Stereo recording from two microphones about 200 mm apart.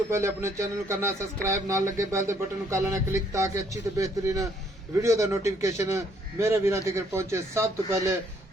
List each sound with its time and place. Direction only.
0.1 s speech: 15° right (ahead or behind)